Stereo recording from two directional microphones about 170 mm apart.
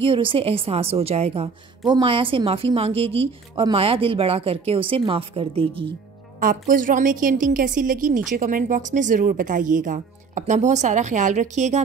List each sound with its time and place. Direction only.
0.0 s speech: 30° right (ahead or behind)
6.4 s a woman's voice: 55° right (ahead or behind)